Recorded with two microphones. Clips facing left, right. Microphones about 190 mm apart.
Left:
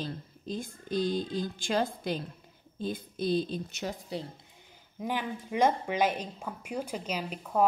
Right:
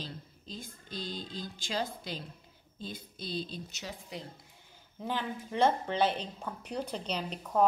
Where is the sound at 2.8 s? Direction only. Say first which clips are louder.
Left 9 dB; 55° left (ahead or behind).